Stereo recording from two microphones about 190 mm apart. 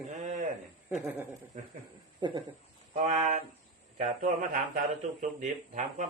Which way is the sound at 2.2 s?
25° right (ahead or behind).